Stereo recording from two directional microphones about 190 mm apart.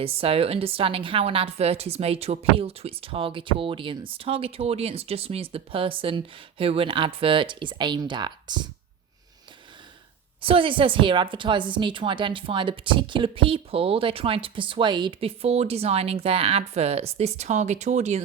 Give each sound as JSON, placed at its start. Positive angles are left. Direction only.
{"t": 0.0, "sound": "a woman's voice", "side_deg": -30}
{"t": 10.4, "sound": "a woman's voice", "side_deg": -25}